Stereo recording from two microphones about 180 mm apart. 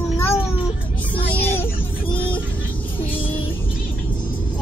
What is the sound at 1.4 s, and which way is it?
Vehicle, 10° left (ahead or behind).